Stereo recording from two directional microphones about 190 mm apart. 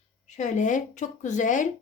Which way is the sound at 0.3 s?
40° left (ahead or behind).